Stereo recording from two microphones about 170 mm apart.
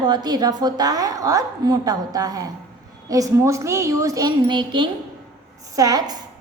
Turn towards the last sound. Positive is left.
turn(degrees=-20)  # may be behind; listen again after turning